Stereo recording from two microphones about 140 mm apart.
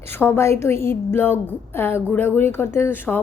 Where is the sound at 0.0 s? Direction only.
15° left (ahead or behind).